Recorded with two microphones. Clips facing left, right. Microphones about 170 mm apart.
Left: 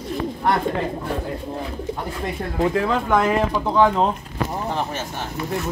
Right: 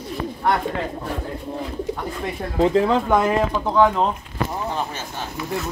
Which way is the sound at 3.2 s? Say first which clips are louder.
Even; 5° right (ahead or behind).